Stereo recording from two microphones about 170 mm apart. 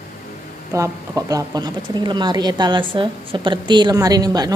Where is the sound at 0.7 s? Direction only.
20° right (ahead or behind).